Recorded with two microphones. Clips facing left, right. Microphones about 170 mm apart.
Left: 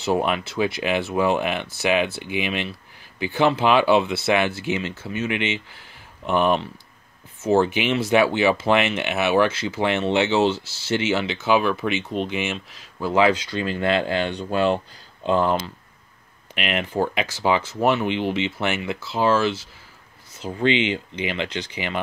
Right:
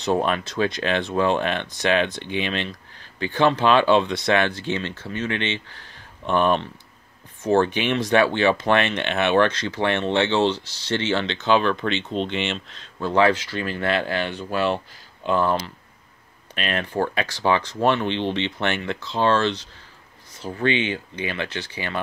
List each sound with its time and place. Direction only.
0.0 s speech: 10° left (ahead or behind)
20.4 s speech: 20° left (ahead or behind)